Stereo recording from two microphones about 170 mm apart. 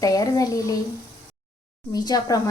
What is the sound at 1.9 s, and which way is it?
Speech, 20° left (ahead or behind).